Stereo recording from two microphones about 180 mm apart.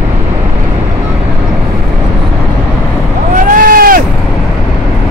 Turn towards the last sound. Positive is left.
turn(degrees=-55)  # may be behind; listen again after turning